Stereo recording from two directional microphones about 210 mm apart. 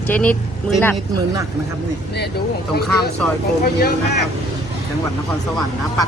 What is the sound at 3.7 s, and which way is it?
Speech, 50° left (ahead or behind).